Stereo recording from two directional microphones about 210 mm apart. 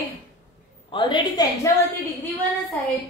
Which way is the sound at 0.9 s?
20° left (ahead or behind).